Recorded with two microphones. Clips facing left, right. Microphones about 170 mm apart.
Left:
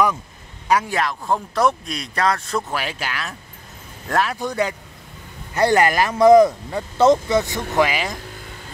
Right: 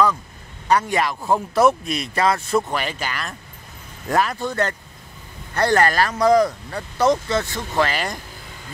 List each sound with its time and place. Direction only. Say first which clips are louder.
0.7 s speech: right 1 dB; 5° left (ahead or behind)
4.4 s speech: left 1 dB; 10° left (ahead or behind)